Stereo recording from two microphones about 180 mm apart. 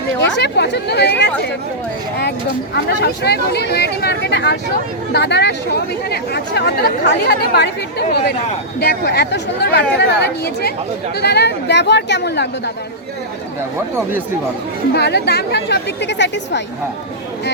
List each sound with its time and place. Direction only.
0.2 s a woman's voice: 75° left (ahead or behind)
2.7 s a woman's voice: 65° left (ahead or behind)
14.9 s a woman's voice: 70° left (ahead or behind)